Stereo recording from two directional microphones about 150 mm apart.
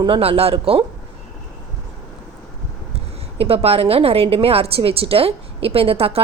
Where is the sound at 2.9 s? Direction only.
40° right (ahead or behind).